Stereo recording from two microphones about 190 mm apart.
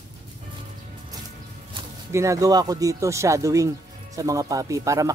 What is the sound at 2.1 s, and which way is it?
Speech, 15° right (ahead or behind).